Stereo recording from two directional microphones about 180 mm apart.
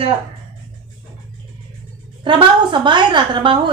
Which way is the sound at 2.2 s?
25° right (ahead or behind).